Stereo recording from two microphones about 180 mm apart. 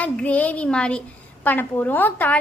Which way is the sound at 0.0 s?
10° left (ahead or behind).